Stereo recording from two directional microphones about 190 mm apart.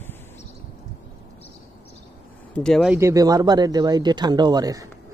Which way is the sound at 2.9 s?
15° right (ahead or behind).